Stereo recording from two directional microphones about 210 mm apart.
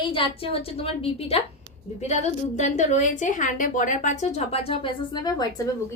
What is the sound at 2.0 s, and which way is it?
A woman's voice, 35° left (ahead or behind).